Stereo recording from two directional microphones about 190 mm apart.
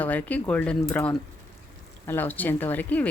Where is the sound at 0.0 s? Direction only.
10° left (ahead or behind).